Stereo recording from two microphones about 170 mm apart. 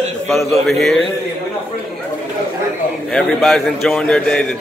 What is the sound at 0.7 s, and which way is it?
Speech, centre (ahead or behind).